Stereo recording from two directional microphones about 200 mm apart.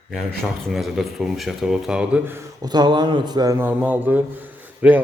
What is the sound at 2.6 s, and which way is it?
A man's voice, 20° right (ahead or behind).